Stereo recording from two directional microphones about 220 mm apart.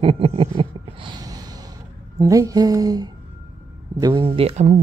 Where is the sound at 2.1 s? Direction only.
15° right (ahead or behind).